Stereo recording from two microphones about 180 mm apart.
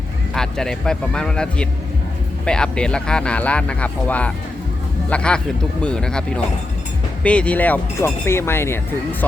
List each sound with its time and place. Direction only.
0.3 s speech: 5° left (ahead or behind)